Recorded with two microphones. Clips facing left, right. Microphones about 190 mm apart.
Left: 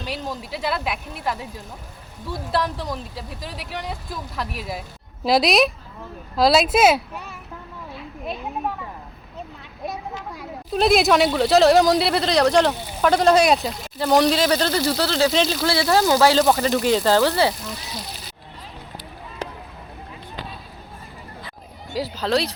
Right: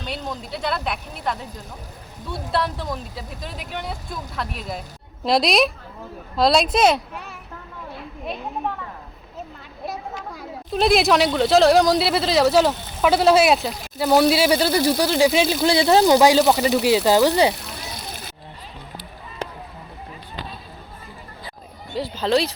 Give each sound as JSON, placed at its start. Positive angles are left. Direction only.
{"t": 0.0, "sound": "speech", "side_deg": 5}
{"t": 2.5, "sound": "speech", "side_deg": 0}
{"t": 8.3, "sound": "a sound", "side_deg": 10}
{"t": 10.3, "sound": "speech", "side_deg": 0}
{"t": 16.4, "sound": "speech", "side_deg": -5}
{"t": 17.5, "sound": "bicycle", "side_deg": -55}
{"t": 21.9, "sound": "speech", "side_deg": 0}